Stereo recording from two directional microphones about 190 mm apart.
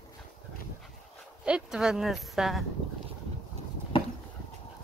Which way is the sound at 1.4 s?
5° right (ahead or behind).